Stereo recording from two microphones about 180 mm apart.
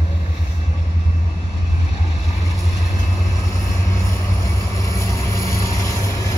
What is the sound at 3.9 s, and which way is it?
Vehicle, 15° left (ahead or behind).